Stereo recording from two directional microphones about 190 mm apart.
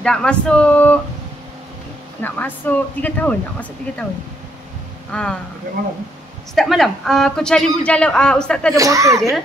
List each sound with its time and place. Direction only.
0.0 s a man's voice: 5° left (ahead or behind)
2.2 s speech: 10° left (ahead or behind)
5.1 s a man's voice: 5° left (ahead or behind)
6.5 s a man's voice: centre (ahead or behind)
8.7 s speech: 15° right (ahead or behind)